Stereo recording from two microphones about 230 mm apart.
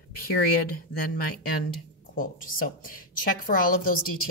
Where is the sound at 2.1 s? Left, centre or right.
Left.